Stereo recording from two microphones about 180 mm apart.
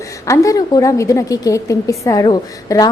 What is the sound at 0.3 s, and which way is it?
A woman's voice, 20° left (ahead or behind).